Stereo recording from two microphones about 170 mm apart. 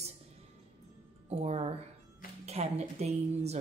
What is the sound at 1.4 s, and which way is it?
A woman's voice, 40° right (ahead or behind).